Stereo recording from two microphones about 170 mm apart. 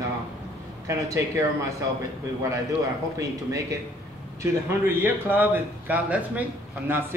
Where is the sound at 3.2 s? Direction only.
20° right (ahead or behind).